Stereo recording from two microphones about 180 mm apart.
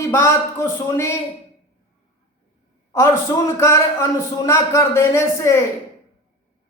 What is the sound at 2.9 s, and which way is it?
A man's voice, 20° left (ahead or behind).